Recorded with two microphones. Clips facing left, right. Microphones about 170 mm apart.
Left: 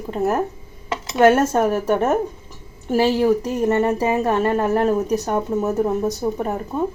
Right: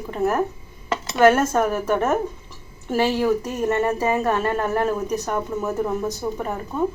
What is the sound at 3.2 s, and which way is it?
Speech, 15° left (ahead or behind).